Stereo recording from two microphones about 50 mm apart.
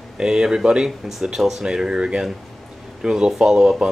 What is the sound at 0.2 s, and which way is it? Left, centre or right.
Speech, centre.